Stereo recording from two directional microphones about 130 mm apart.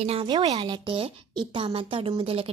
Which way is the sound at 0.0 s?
45° right (ahead or behind).